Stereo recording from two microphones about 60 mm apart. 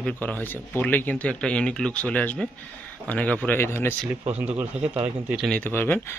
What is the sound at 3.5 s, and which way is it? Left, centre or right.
Speech, left.